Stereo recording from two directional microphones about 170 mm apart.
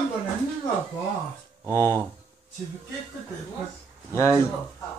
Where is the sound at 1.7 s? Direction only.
15° left (ahead or behind).